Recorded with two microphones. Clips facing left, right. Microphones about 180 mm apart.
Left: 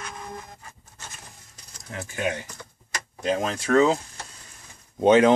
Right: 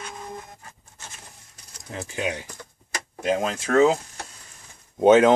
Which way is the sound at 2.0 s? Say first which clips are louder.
Even; 20° right (ahead or behind).